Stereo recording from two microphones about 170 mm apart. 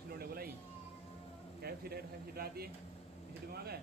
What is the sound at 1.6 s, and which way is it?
A man's voice, 65° right (ahead or behind).